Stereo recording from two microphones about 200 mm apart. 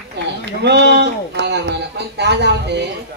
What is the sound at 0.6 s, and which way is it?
A man's voice, 60° right (ahead or behind).